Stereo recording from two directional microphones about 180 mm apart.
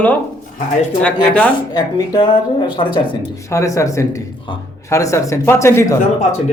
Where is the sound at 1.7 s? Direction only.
25° left (ahead or behind).